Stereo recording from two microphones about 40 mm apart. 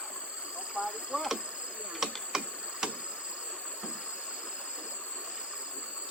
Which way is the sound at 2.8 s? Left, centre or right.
Right.